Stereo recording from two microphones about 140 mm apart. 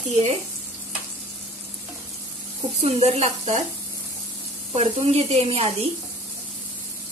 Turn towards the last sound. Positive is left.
turn(degrees=-45)  # may be behind; listen again after turning